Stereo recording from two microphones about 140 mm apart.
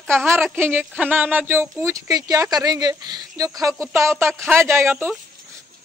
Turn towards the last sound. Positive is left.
turn(degrees=-15)  # may be behind; listen again after turning